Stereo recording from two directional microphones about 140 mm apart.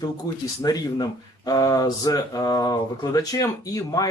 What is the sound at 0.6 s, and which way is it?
Speech, 30° left (ahead or behind).